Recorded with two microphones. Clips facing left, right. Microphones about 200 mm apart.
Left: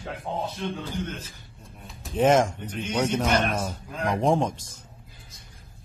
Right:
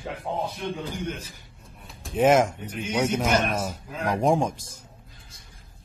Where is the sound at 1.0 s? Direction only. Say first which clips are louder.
Right 1 dB; 10° right (ahead or behind).